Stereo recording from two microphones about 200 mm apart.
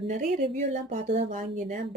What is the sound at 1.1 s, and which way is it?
Speech, 50° right (ahead or behind).